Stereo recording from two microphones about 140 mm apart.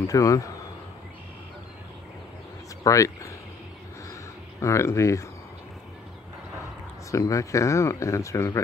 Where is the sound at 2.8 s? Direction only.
25° left (ahead or behind).